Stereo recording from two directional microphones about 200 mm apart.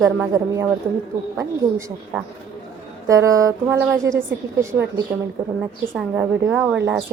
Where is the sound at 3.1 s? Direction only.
15° right (ahead or behind).